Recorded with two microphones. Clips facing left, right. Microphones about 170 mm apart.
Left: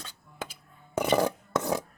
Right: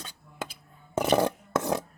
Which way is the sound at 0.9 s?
5° right (ahead or behind).